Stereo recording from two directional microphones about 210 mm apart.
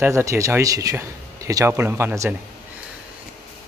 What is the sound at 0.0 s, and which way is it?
Speech, 15° right (ahead or behind).